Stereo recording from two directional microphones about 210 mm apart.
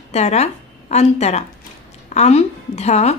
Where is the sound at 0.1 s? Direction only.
30° left (ahead or behind).